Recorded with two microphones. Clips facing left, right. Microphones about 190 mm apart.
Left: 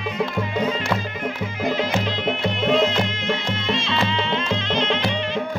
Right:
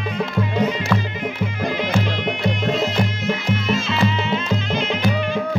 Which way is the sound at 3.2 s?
5° right (ahead or behind).